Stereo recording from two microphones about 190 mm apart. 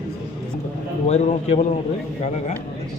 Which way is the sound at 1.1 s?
35° left (ahead or behind).